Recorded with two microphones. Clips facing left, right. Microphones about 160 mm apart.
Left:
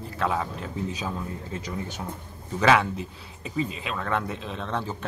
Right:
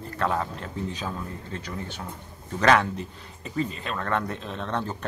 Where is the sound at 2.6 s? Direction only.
5° left (ahead or behind).